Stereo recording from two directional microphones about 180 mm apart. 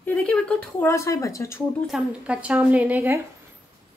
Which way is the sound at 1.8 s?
5° right (ahead or behind).